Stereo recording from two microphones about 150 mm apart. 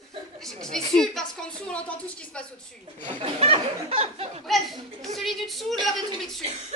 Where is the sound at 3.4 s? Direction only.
40° right (ahead or behind).